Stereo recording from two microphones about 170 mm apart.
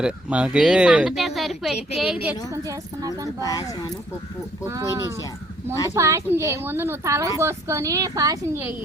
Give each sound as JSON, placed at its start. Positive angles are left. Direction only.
{"t": 0.0, "sound": "speech", "side_deg": -5}
{"t": 2.5, "sound": "speech", "side_deg": -20}
{"t": 3.4, "sound": "speech", "side_deg": 20}
{"t": 4.7, "sound": "speech", "side_deg": -20}